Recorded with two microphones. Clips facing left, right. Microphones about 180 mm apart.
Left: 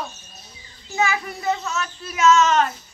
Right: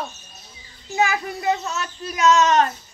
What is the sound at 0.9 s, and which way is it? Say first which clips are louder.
Speech: right 1 dB; 35° right (ahead or behind).